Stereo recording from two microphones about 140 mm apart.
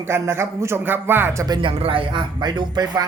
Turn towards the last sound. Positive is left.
turn(degrees=-30)  # may be behind; listen again after turning